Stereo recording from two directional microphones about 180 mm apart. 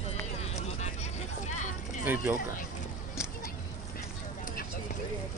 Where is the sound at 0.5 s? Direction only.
40° left (ahead or behind).